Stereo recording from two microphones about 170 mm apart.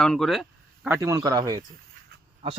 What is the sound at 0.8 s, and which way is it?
Speech, 15° right (ahead or behind).